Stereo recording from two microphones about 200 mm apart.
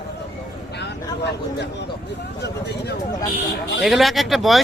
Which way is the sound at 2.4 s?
55° left (ahead or behind).